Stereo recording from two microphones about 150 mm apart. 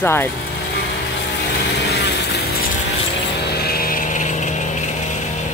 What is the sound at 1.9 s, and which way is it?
Vehicle, 90° left.